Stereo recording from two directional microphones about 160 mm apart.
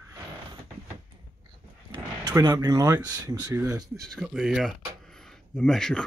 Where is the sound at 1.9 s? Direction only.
25° right (ahead or behind).